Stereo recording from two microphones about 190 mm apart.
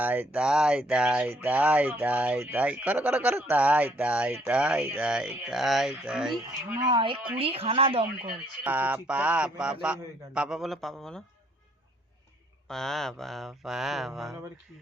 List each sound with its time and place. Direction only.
0.0 s speech: 10° right (ahead or behind)
6.8 s a woman's voice: 25° right (ahead or behind)
8.6 s speech: 10° right (ahead or behind)
12.6 s speech: centre (ahead or behind)